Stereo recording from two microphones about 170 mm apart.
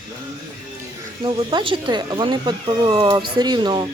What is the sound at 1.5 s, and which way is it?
A woman's voice, 30° right (ahead or behind).